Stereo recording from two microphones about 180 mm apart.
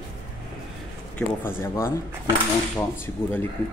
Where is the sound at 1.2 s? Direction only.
10° left (ahead or behind).